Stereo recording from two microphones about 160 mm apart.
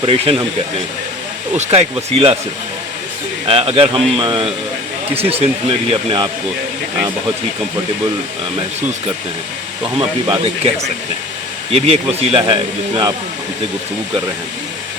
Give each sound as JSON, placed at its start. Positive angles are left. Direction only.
{"t": 0.0, "sound": "speech", "side_deg": -35}
{"t": 1.5, "sound": "speech", "side_deg": -40}
{"t": 3.4, "sound": "speech", "side_deg": -35}
{"t": 10.0, "sound": "speech", "side_deg": -30}
{"t": 11.7, "sound": "speech", "side_deg": -35}